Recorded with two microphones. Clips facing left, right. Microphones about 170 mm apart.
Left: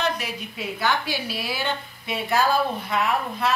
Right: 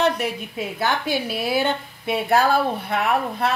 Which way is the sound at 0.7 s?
50° right (ahead or behind).